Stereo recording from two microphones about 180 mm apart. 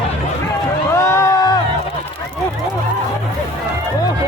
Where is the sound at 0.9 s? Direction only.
15° left (ahead or behind).